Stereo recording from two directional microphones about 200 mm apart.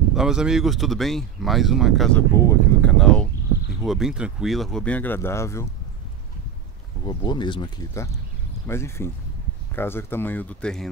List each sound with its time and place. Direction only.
0.1 s speech: 5° right (ahead or behind)
2.3 s a sound: 15° left (ahead or behind)
3.8 s speech: centre (ahead or behind); by 5.7 s 15° left (ahead or behind)
7.1 s speech: 20° left (ahead or behind); by 10.9 s 5° left (ahead or behind)